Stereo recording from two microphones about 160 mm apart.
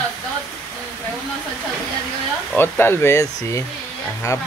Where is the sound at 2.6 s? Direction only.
15° left (ahead or behind).